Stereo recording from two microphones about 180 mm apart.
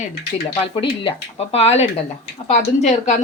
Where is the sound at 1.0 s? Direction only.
30° left (ahead or behind).